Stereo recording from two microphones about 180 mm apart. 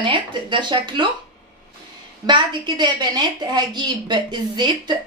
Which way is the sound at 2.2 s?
25° right (ahead or behind).